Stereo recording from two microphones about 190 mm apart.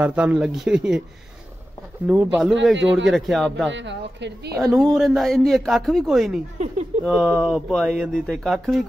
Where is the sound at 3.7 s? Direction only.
70° right (ahead or behind).